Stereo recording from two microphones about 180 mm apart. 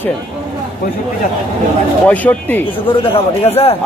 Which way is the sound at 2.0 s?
10° left (ahead or behind).